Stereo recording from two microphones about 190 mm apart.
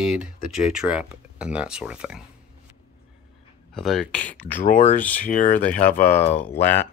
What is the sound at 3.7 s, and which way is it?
Speech, centre (ahead or behind).